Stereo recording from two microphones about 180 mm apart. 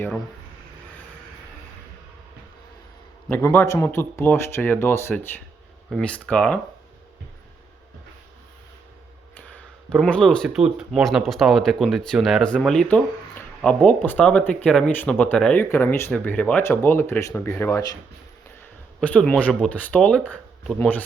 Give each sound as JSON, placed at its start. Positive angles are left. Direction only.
{"t": 3.2, "sound": "speech", "side_deg": 10}
{"t": 9.3, "sound": "speech", "side_deg": 10}
{"t": 18.9, "sound": "speech", "side_deg": 5}